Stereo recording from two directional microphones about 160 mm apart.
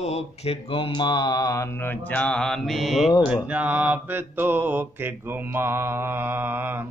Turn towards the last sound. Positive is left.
turn(degrees=-15)  # may be behind; listen again after turning